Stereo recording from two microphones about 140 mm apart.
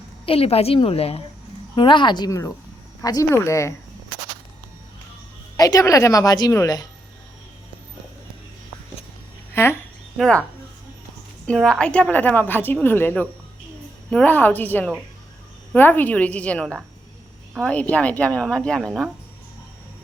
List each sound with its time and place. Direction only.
0.3 s a woman's voice: 45° left (ahead or behind); by 3.8 s 20° left (ahead or behind)
5.5 s a woman's voice: 25° left (ahead or behind)
9.6 s a woman's voice: 20° left (ahead or behind)
10.2 s a woman's voice: 5° left (ahead or behind)
11.4 s a woman's voice: 5° left (ahead or behind)